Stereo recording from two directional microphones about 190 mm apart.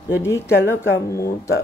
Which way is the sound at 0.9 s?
15° left (ahead or behind).